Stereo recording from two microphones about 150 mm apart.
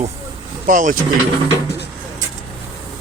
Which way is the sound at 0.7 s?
60° right (ahead or behind).